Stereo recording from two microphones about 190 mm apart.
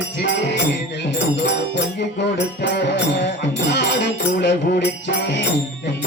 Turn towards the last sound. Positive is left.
turn(degrees=65)  # may be behind; listen again after turning